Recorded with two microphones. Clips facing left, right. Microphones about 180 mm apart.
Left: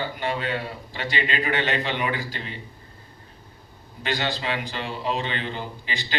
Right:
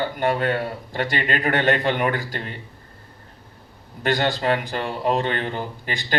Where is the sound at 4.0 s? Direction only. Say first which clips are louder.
Right 6 dB; 50° right (ahead or behind).